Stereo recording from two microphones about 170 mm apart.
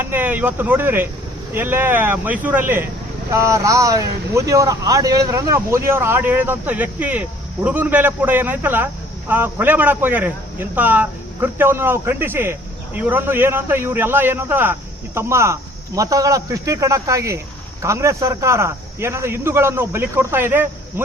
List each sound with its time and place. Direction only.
0.0 s a man's voice: 10° right (ahead or behind)